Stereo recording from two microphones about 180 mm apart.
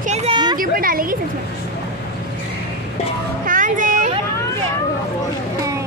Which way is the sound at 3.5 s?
50° right (ahead or behind).